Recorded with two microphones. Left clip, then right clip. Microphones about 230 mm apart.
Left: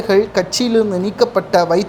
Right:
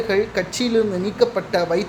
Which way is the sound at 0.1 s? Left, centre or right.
Left.